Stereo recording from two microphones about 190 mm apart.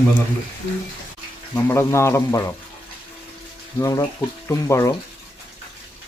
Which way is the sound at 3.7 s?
15° left (ahead or behind).